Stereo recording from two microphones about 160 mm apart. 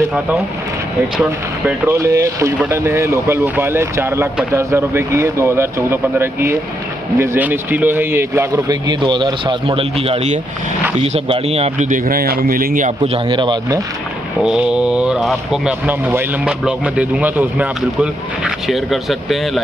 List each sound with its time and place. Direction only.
1.7 s speech: 15° right (ahead or behind); by 12.9 s 60° right (ahead or behind)
13.0 s speech: 35° right (ahead or behind)
14.4 s speech: 5° right (ahead or behind)